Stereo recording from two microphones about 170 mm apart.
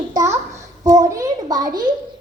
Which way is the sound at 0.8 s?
20° right (ahead or behind).